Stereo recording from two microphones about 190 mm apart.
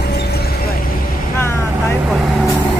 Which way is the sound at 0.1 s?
55° left (ahead or behind).